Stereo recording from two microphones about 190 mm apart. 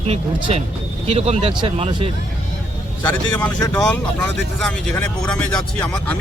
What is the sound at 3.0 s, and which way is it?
Speech, 10° left (ahead or behind).